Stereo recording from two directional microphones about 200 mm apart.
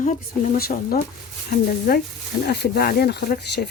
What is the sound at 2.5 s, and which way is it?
Speech, 50° left (ahead or behind).